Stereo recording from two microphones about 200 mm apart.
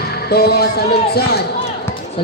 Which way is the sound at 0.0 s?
50° left (ahead or behind).